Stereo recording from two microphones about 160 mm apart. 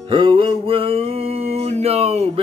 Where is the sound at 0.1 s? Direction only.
30° right (ahead or behind).